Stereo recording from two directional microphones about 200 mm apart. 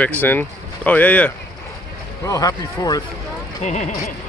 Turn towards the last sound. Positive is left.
turn(degrees=35)  # may be behind; listen again after turning